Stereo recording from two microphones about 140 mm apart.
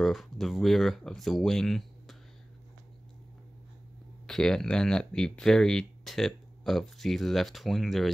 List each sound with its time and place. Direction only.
0.0 s speech: centre (ahead or behind)
4.3 s speech: 5° left (ahead or behind)